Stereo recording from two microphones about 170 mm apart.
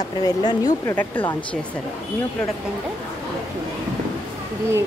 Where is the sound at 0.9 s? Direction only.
10° left (ahead or behind).